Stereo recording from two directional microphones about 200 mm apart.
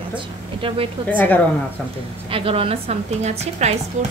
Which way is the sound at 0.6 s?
25° right (ahead or behind).